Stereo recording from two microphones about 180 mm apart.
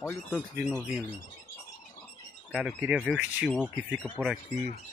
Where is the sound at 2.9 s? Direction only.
5° right (ahead or behind).